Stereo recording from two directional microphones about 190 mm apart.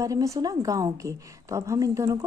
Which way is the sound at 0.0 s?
15° right (ahead or behind).